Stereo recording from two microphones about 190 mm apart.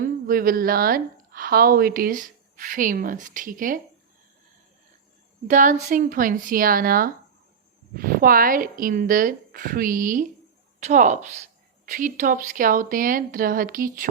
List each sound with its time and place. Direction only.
0.0 s a woman's voice: 50° right (ahead or behind)
5.5 s a woman's voice: 45° right (ahead or behind)